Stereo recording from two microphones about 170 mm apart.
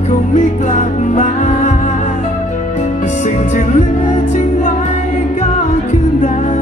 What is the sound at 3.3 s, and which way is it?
Music, 50° left (ahead or behind).